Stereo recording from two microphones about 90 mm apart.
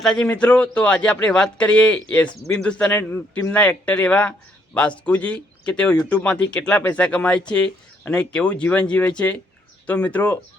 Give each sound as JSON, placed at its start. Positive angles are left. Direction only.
{"t": 0.0, "sound": "speech", "side_deg": 10}
{"t": 2.9, "sound": "speech", "side_deg": 25}